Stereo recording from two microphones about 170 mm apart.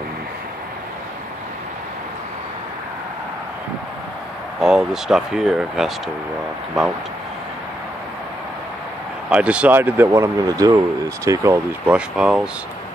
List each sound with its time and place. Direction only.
4.6 s speech: 5° right (ahead or behind)
9.3 s speech: 5° right (ahead or behind)
11.9 s speech: 5° right (ahead or behind)